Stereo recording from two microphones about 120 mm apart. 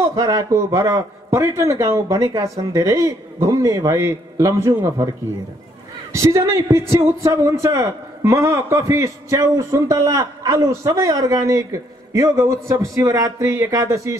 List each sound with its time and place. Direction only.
0.0 s a man's voice: 30° right (ahead or behind)
6.1 s a man's voice: 25° right (ahead or behind)